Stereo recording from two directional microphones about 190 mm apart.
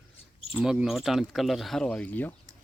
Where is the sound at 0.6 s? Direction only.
5° right (ahead or behind).